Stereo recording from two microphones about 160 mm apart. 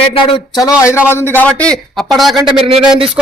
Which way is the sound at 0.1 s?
35° left (ahead or behind).